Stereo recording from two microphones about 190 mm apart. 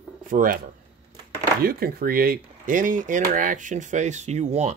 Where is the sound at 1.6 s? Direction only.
55° right (ahead or behind).